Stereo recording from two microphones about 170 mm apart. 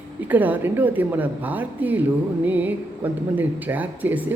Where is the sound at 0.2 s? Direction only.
10° right (ahead or behind).